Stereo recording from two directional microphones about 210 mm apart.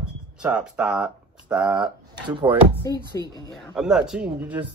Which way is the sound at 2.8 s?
15° left (ahead or behind).